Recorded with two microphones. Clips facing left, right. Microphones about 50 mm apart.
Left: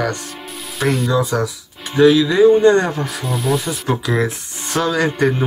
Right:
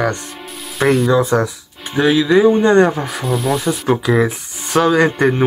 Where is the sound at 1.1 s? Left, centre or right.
Right.